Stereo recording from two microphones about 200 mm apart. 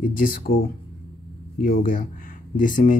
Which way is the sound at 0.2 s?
45° left (ahead or behind).